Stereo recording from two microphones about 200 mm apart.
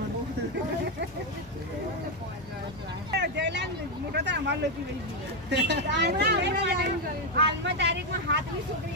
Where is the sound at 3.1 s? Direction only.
60° right (ahead or behind).